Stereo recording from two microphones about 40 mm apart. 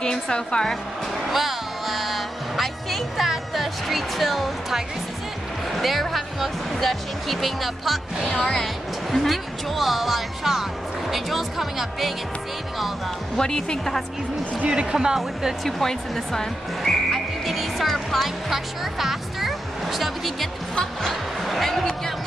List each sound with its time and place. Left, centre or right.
0.0 s a woman's voice: centre
1.2 s music: centre
5.7 s speech: centre
8.2 s speech: centre
13.4 s speech: centre
14.7 s speech: right
15.1 s speech: centre
15.8 s speech: centre
17.5 s music: centre
20.7 s music: centre